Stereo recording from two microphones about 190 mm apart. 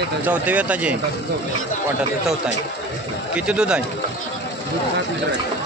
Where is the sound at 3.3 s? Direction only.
5° right (ahead or behind).